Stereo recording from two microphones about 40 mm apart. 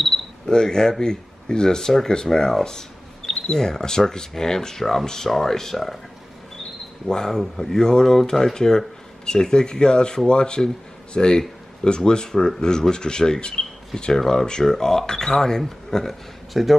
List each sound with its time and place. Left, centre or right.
0.5 s speech: centre
7.1 s speech: centre
16.5 s speech: centre